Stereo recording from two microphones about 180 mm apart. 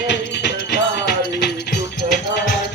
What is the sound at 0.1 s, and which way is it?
Music, 70° left (ahead or behind).